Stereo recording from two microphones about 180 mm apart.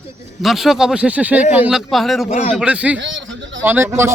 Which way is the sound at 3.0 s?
85° right.